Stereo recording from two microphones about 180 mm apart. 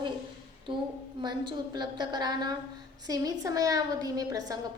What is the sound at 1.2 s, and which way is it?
A woman's voice, 25° right (ahead or behind).